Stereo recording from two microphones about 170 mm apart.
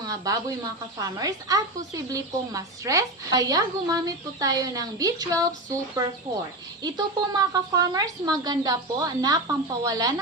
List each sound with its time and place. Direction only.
0.0 s a woman's voice: 20° right (ahead or behind)
6.8 s a woman's voice: 25° right (ahead or behind)